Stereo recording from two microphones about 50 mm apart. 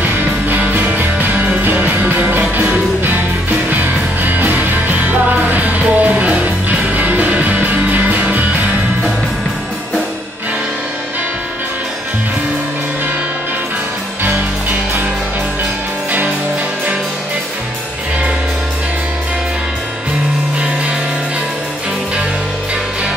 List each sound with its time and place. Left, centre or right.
0.0 s music: right